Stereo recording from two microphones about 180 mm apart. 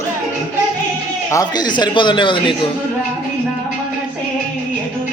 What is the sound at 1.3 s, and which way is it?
A man's voice, 20° left (ahead or behind).